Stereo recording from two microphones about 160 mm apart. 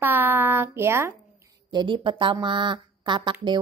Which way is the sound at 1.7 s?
30° right (ahead or behind).